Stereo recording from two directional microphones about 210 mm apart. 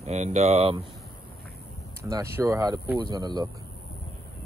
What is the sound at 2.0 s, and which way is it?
Speech, 15° right (ahead or behind).